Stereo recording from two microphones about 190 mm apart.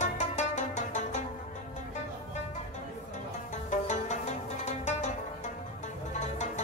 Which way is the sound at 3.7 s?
40° left (ahead or behind).